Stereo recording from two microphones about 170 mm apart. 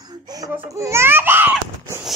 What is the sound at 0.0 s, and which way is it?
Baby cry, 25° right (ahead or behind).